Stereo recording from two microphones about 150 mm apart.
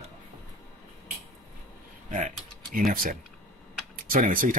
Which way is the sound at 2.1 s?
65° right (ahead or behind).